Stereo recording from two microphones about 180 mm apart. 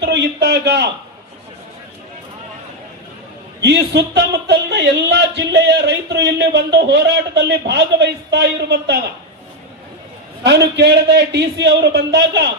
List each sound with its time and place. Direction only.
0.0 s a sound: 70° right (ahead or behind)
3.6 s speech: 70° right (ahead or behind)
10.4 s speech: 70° right (ahead or behind)